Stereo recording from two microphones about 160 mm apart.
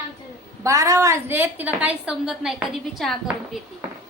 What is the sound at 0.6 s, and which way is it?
A woman's voice, 20° right (ahead or behind).